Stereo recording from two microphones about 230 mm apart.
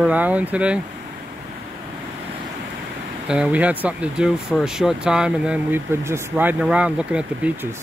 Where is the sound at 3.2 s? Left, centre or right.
Centre.